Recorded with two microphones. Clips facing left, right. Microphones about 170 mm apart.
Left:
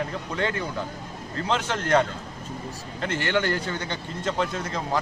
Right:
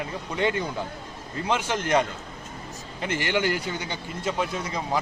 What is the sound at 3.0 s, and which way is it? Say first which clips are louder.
A man's voice: even; 15° right (ahead or behind).